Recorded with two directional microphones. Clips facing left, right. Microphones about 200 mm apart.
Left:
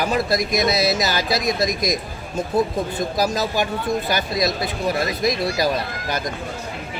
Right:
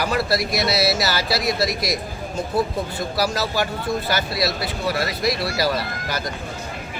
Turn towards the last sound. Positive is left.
turn(degrees=20)  # may be behind; listen again after turning